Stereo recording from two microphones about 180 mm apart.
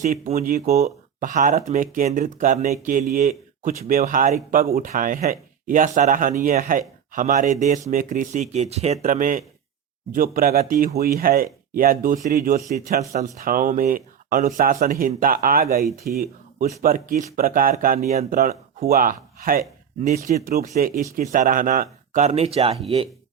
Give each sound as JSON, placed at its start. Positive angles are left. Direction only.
{"t": 0.0, "sound": "speech", "side_deg": -40}
{"t": 22.3, "sound": "speech", "side_deg": -35}